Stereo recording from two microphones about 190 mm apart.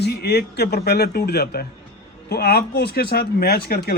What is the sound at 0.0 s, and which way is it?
A man's voice, 60° left (ahead or behind).